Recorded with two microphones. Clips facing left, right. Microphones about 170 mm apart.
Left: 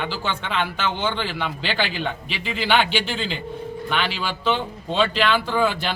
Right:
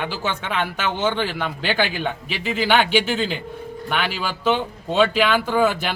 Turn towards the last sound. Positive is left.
turn(degrees=-10)  # may be behind; listen again after turning